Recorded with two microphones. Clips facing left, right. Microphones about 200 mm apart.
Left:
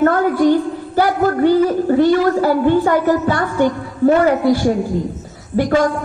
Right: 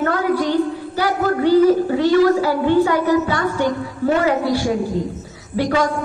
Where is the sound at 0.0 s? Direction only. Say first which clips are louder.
Left 5 dB; 45° left (ahead or behind).